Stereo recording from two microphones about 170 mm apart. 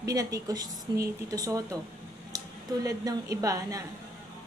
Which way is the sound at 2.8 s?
20° right (ahead or behind).